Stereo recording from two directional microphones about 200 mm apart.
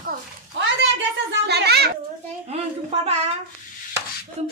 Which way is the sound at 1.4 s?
55° right (ahead or behind).